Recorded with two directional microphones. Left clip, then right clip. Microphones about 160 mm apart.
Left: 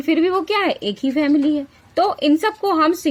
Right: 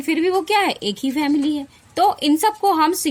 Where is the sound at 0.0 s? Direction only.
35° right (ahead or behind).